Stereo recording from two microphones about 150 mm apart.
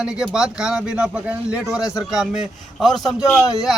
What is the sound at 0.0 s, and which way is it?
Speech, 5° right (ahead or behind).